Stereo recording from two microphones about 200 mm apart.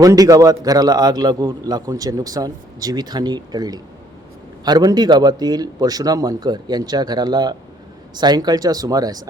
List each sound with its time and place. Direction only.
0.0 s a man's voice: 15° right (ahead or behind)